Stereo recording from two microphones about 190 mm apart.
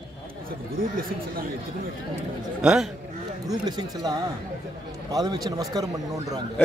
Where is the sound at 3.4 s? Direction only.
20° right (ahead or behind).